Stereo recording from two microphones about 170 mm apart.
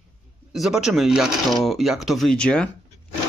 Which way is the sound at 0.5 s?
Centre (ahead or behind).